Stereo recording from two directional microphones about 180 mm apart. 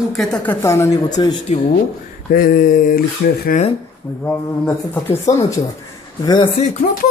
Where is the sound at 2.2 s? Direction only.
50° left (ahead or behind).